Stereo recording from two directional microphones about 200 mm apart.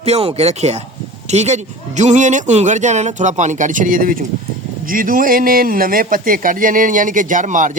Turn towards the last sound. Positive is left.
turn(degrees=-40)  # may be behind; listen again after turning